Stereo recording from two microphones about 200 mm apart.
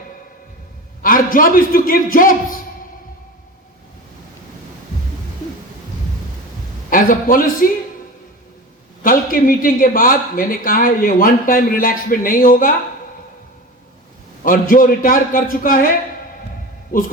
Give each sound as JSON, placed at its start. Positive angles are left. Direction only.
{"t": 1.0, "sound": "speech", "side_deg": 45}
{"t": 6.9, "sound": "speech", "side_deg": 45}
{"t": 9.0, "sound": "speech", "side_deg": 45}
{"t": 14.4, "sound": "speech", "side_deg": 45}